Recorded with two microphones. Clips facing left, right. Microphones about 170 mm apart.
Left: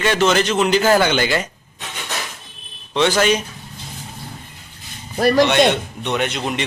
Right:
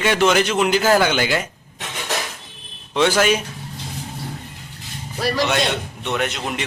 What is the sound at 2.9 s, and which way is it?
Speech, 5° right (ahead or behind).